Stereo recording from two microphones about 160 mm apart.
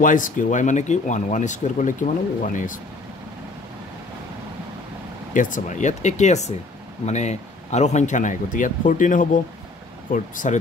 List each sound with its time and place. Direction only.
0.0 s speech: 55° left (ahead or behind)
5.3 s speech: 55° left (ahead or behind)